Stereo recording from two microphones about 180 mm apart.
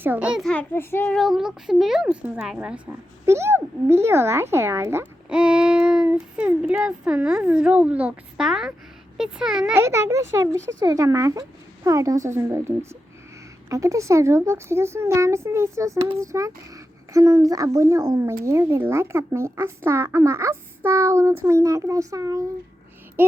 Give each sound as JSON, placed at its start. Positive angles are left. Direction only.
{"t": 0.0, "sound": "a child's voice", "side_deg": -10}
{"t": 9.8, "sound": "speech", "side_deg": -15}